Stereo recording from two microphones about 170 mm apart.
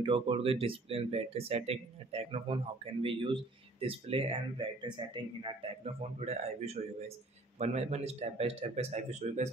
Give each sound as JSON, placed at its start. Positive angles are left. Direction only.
{"t": 0.0, "sound": "speech", "side_deg": -30}